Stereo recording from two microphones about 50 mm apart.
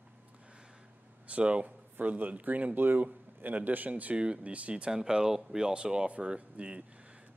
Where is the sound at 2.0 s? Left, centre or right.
Right.